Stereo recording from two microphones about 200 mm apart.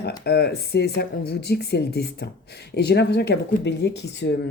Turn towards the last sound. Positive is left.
turn(degrees=60)  # may be behind; listen again after turning